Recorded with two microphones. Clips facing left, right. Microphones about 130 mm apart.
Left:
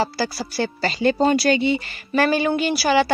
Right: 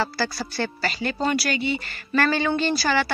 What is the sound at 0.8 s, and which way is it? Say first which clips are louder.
Speech: left 8 dB; 25° left (ahead or behind).